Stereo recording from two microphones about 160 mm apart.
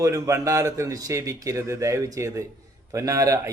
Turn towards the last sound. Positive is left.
turn(degrees=-20)  # may be behind; listen again after turning